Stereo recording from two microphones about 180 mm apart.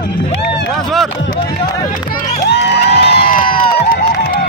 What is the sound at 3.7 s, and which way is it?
Crowd, 55° left (ahead or behind).